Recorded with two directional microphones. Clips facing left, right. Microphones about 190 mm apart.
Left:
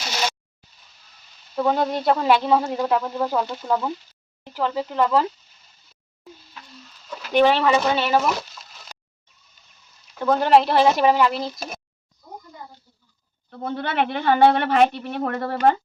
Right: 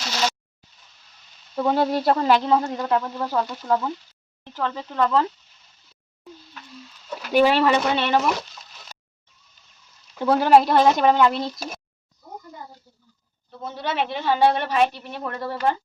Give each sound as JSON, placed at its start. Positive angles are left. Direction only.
{"t": 1.5, "sound": "speech", "side_deg": 0}
{"t": 7.3, "sound": "speech", "side_deg": -5}
{"t": 10.2, "sound": "speech", "side_deg": -10}
{"t": 13.5, "sound": "a woman's voice", "side_deg": 60}